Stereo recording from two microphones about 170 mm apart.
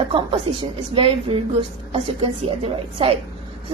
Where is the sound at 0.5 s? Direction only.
35° right (ahead or behind).